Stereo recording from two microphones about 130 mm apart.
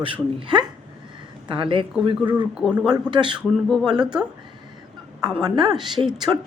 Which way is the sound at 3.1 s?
35° right (ahead or behind).